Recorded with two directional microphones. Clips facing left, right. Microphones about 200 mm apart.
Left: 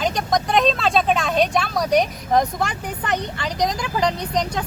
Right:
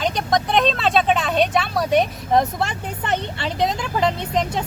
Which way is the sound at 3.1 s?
25° right (ahead or behind).